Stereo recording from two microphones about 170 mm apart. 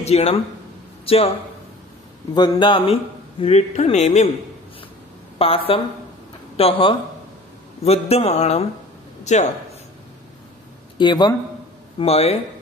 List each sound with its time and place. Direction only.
0.0 s speech: 40° left (ahead or behind)
2.3 s a man's voice: 25° left (ahead or behind)
5.4 s a man's voice: 35° left (ahead or behind)
11.0 s a man's voice: 25° left (ahead or behind)
12.0 s a man's voice: 35° left (ahead or behind)